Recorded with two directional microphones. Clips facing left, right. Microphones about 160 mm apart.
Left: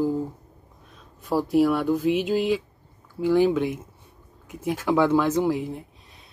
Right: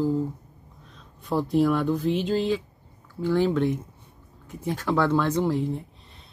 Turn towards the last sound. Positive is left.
turn(degrees=10)  # may be behind; listen again after turning